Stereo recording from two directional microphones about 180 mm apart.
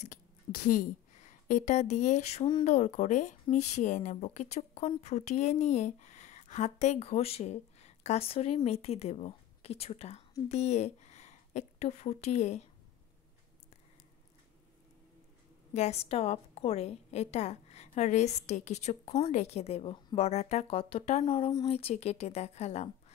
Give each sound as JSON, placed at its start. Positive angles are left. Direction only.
{"t": 0.0, "sound": "a woman's voice", "side_deg": 45}
{"t": 15.7, "sound": "a woman's voice", "side_deg": 35}